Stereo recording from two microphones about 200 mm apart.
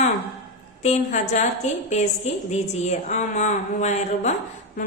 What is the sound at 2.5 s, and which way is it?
A woman's voice, 35° left (ahead or behind).